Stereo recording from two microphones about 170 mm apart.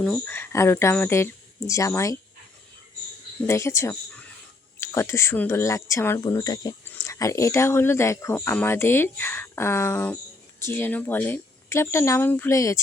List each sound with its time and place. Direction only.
0.0 s speech: 10° left (ahead or behind)
3.4 s speech: 15° left (ahead or behind)